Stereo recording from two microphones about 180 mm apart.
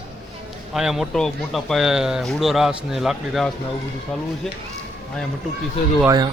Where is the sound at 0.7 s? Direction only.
5° right (ahead or behind).